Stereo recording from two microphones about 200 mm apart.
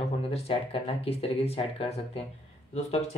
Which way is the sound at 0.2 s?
30° left (ahead or behind).